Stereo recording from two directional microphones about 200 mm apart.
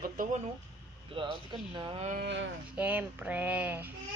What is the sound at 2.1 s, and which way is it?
Speech, 65° right (ahead or behind).